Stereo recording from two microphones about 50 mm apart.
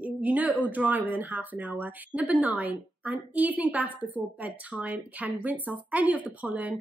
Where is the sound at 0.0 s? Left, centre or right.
Right.